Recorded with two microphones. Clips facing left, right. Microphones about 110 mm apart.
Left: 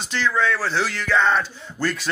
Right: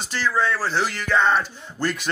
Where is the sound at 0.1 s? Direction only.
10° right (ahead or behind).